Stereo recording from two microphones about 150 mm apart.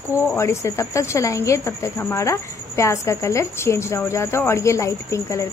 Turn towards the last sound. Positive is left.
turn(degrees=20)  # may be behind; listen again after turning